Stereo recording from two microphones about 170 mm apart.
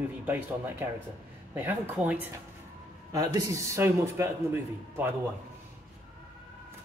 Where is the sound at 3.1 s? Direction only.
20° right (ahead or behind).